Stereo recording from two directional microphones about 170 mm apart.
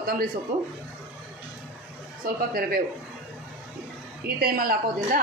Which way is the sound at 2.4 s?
60° right (ahead or behind).